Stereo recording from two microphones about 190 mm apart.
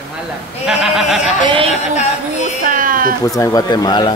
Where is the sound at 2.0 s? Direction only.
35° left (ahead or behind).